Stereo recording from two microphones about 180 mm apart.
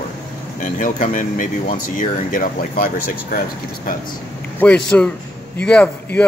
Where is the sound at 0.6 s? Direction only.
45° left (ahead or behind).